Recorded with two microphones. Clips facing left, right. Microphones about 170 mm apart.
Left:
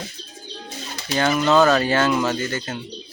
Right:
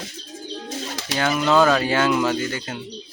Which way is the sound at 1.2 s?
5° right (ahead or behind).